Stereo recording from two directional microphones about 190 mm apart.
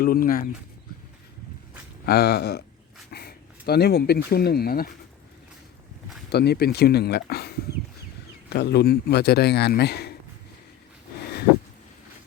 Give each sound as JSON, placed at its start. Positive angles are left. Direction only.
{"t": 0.0, "sound": "speech", "side_deg": 50}
{"t": 2.0, "sound": "a man's voice", "side_deg": 55}
{"t": 6.3, "sound": "a man's voice", "side_deg": 60}